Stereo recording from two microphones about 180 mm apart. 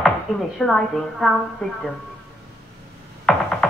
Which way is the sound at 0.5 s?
Centre (ahead or behind).